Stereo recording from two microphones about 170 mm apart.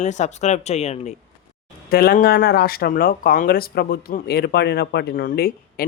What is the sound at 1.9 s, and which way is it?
Speech, 60° left (ahead or behind).